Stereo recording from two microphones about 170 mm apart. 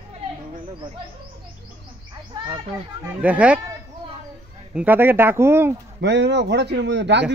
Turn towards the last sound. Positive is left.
turn(degrees=-90)